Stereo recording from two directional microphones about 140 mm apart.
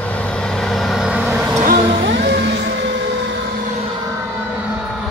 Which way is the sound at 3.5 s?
85° right.